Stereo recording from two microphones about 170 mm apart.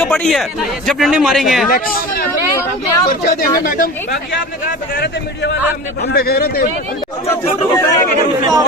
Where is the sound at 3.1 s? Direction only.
60° left (ahead or behind).